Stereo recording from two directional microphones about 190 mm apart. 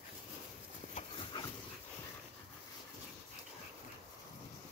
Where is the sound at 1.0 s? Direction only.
30° left (ahead or behind).